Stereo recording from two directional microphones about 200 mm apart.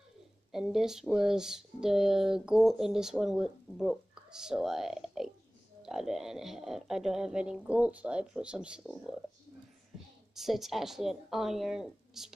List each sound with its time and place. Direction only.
0.5 s speech: centre (ahead or behind)
9.9 s a sound: centre (ahead or behind)
10.3 s speech: centre (ahead or behind)